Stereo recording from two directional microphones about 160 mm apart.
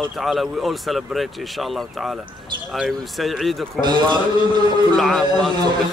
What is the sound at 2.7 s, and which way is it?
Speech, centre (ahead or behind).